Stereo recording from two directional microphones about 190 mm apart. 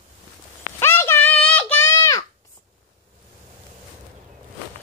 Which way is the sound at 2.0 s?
15° left (ahead or behind).